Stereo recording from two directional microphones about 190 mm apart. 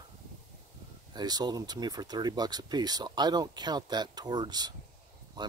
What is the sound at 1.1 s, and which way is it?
Speech, 20° right (ahead or behind).